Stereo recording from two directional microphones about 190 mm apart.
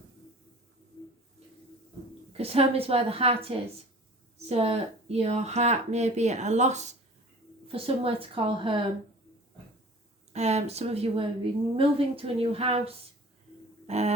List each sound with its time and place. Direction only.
2.4 s a woman's voice: 30° right (ahead or behind)
10.3 s speech: 35° right (ahead or behind)
13.8 s a sound: 35° right (ahead or behind)